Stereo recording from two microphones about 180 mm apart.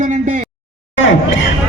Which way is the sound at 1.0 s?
90° left.